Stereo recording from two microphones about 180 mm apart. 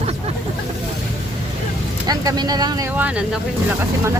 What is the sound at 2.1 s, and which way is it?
Speech, 20° right (ahead or behind).